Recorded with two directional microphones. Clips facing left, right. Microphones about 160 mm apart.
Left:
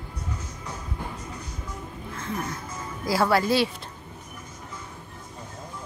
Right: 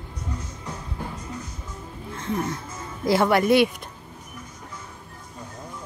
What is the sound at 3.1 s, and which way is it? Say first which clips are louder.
Speech: right 4 dB; 20° right (ahead or behind).